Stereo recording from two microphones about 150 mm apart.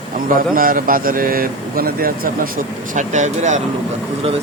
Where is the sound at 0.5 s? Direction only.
70° right (ahead or behind).